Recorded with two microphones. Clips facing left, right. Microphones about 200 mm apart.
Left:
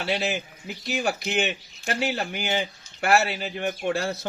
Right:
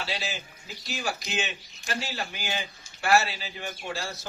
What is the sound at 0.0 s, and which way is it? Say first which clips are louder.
A man's voice: left 8 dB; 60° left (ahead or behind).